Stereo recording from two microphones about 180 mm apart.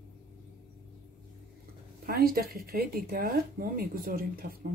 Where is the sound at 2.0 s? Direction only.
55° right (ahead or behind).